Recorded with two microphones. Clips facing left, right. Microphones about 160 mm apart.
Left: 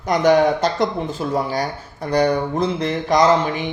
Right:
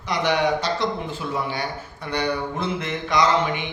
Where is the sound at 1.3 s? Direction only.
40° left (ahead or behind).